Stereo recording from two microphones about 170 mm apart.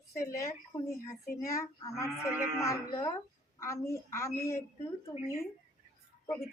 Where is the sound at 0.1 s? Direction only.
15° left (ahead or behind).